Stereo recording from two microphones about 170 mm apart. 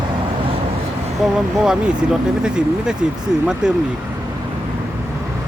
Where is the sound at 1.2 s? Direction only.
5° right (ahead or behind).